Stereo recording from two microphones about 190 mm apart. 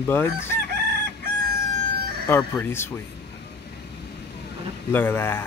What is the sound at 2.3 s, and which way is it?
Speech, 10° left (ahead or behind).